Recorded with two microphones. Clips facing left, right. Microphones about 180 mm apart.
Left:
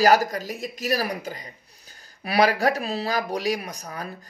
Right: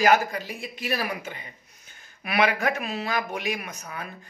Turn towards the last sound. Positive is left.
turn(degrees=35)  # may be behind; listen again after turning